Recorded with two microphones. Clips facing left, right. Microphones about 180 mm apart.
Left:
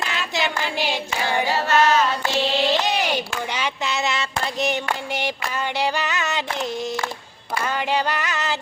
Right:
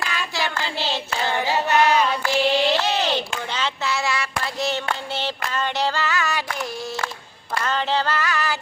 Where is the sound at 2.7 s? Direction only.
15° left (ahead or behind).